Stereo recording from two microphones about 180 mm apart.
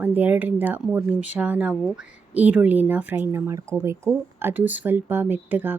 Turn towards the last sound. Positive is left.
turn(degrees=-10)  # may be behind; listen again after turning